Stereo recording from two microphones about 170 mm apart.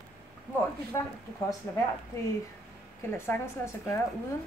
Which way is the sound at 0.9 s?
20° left (ahead or behind).